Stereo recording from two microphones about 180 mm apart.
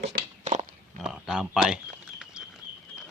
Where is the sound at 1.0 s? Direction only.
5° right (ahead or behind).